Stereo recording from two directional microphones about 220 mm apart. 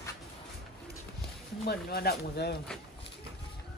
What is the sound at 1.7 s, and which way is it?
Speech, 45° left (ahead or behind).